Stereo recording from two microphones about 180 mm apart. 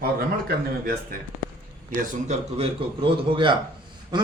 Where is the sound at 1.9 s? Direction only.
40° right (ahead or behind).